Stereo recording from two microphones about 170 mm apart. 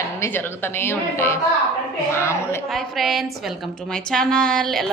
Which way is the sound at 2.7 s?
Centre (ahead or behind).